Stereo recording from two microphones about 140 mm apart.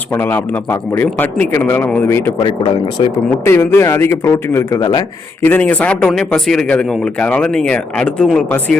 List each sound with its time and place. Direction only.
0.1 s speech: 15° left (ahead or behind)
3.0 s speech: 40° left (ahead or behind)
3.4 s a man's voice: 20° left (ahead or behind)
5.4 s speech: 10° left (ahead or behind)